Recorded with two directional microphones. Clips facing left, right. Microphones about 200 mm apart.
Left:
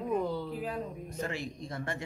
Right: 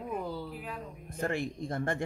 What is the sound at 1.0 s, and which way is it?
Speech, 55° right (ahead or behind).